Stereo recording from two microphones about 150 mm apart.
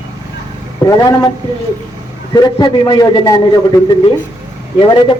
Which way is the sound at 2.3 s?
25° left (ahead or behind).